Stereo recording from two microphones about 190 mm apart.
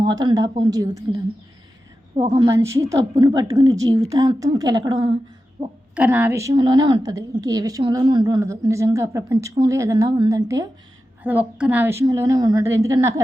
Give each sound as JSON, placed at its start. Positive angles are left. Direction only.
{"t": 0.0, "sound": "a woman's voice", "side_deg": -20}
{"t": 2.3, "sound": "a woman's voice", "side_deg": -15}
{"t": 5.9, "sound": "a woman's voice", "side_deg": -5}